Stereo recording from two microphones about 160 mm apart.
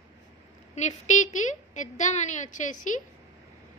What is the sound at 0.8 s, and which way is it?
A woman's voice, 45° left (ahead or behind).